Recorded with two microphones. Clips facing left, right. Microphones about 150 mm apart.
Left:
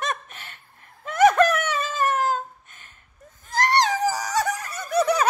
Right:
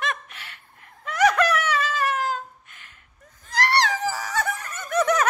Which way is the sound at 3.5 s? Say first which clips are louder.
Left 2 dB; 20° left (ahead or behind).